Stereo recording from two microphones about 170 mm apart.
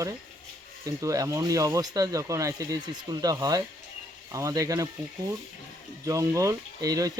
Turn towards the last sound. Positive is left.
turn(degrees=-20)  # may be behind; listen again after turning